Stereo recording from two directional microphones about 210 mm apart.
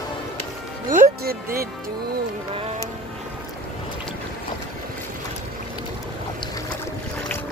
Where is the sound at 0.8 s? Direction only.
40° right (ahead or behind).